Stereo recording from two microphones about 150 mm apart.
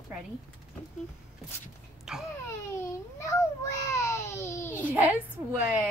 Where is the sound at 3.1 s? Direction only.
20° left (ahead or behind).